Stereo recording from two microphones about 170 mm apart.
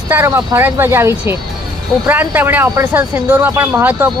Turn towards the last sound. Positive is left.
turn(degrees=-10)  # may be behind; listen again after turning